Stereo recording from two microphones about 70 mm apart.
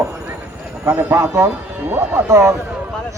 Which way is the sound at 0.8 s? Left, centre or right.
Right.